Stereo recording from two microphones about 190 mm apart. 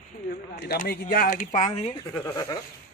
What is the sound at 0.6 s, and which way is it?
Speech, 50° left (ahead or behind).